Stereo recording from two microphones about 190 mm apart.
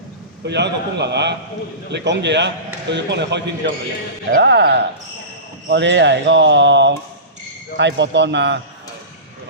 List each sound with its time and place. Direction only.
0.4 s a man's voice: 65° right (ahead or behind)